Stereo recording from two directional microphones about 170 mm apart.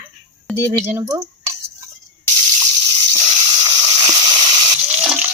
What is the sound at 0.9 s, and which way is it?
Speech, 20° right (ahead or behind).